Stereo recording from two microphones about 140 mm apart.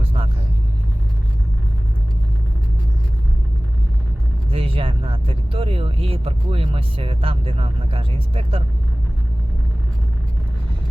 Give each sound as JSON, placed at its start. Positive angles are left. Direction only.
{"t": 0.0, "sound": "vehicle", "side_deg": -40}
{"t": 4.5, "sound": "speech", "side_deg": -40}